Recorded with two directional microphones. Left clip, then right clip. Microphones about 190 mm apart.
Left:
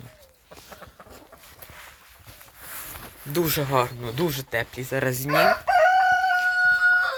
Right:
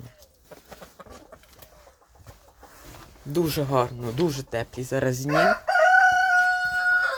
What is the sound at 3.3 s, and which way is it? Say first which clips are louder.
Speech: left 1 dB; 10° right (ahead or behind).